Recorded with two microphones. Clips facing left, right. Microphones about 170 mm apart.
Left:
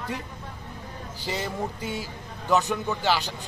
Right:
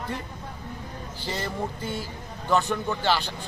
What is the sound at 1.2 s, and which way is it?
A man's voice, 5° left (ahead or behind).